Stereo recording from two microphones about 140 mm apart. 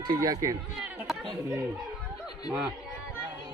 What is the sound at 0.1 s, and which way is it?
Speech, 25° right (ahead or behind).